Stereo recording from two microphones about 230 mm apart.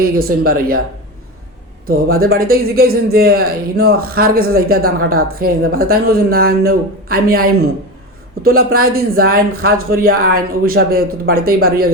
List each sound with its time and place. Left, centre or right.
0.0 s speech: right
1.9 s speech: right